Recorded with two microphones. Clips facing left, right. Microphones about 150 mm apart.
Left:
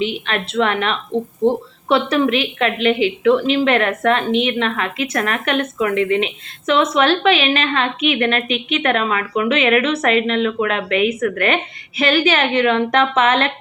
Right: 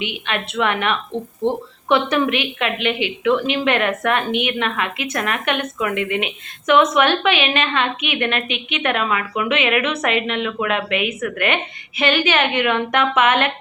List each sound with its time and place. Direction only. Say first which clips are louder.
0.0 s a woman's voice: left 4 dB; 35° left (ahead or behind)